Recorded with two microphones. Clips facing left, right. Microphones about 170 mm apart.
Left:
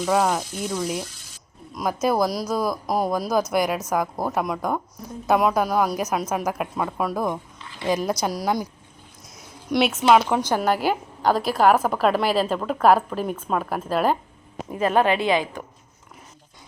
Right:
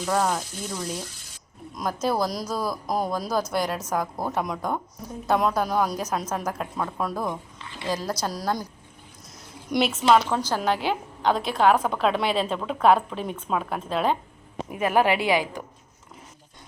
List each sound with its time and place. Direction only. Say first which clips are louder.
0.0 s a woman's voice: left 3 dB; 5° left (ahead or behind)
9.6 s a woman's voice: left 2 dB; centre (ahead or behind)
14.7 s a woman's voice: left 2 dB; 10° right (ahead or behind)